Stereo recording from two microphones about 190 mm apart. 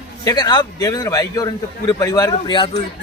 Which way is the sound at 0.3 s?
20° left (ahead or behind).